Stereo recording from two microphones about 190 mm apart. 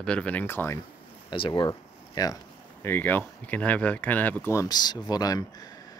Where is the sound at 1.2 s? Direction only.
25° left (ahead or behind).